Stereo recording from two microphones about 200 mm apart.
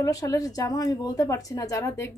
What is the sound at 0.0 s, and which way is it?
A woman's voice, 15° left (ahead or behind).